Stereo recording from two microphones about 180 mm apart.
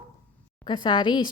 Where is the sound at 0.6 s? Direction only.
25° left (ahead or behind).